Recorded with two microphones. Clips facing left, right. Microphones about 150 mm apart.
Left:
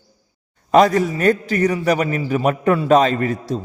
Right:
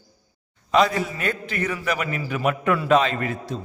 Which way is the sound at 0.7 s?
45° left (ahead or behind).